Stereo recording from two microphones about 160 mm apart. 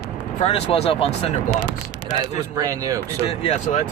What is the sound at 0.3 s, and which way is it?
Speech, 40° left (ahead or behind).